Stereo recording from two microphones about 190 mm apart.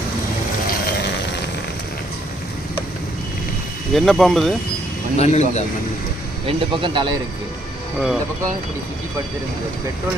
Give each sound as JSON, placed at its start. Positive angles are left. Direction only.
{"t": 3.9, "sound": "speech", "side_deg": 0}
{"t": 5.1, "sound": "a man's voice", "side_deg": 35}
{"t": 6.6, "sound": "speech", "side_deg": -25}
{"t": 7.9, "sound": "speech", "side_deg": 0}